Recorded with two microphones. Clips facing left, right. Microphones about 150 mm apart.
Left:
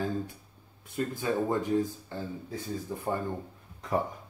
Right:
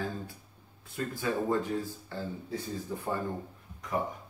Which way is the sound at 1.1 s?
20° left (ahead or behind).